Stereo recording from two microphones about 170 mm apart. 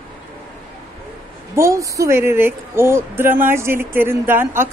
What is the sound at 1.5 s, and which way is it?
Speech, 20° right (ahead or behind).